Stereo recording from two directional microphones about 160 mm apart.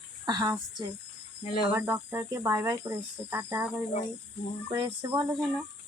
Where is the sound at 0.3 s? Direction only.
20° right (ahead or behind).